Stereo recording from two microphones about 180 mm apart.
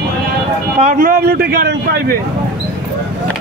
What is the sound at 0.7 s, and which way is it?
A man's voice, 45° right (ahead or behind).